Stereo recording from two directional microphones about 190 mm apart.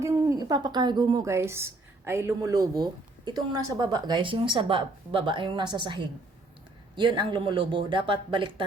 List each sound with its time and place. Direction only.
0.0 s a woman's voice: 15° right (ahead or behind)